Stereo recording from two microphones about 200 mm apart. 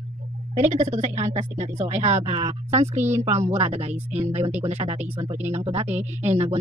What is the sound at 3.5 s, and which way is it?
Speech, 30° right (ahead or behind).